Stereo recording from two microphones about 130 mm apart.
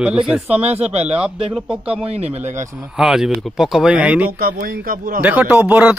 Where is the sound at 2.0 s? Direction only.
55° right (ahead or behind).